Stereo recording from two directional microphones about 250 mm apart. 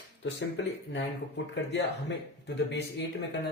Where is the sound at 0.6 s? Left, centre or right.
Left.